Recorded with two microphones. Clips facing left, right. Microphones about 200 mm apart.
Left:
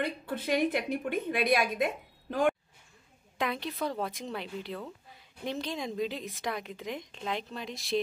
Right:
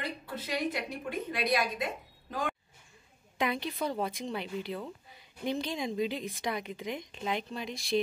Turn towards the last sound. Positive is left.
turn(degrees=0)  # may be behind; listen again after turning